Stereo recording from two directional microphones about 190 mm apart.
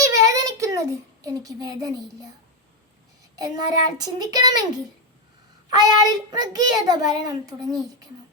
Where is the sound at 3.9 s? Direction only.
20° right (ahead or behind).